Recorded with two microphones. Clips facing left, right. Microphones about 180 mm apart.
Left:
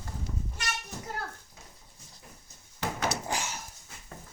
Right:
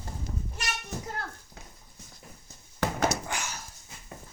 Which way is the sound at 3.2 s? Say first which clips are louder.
Left 2 dB; 30° left (ahead or behind).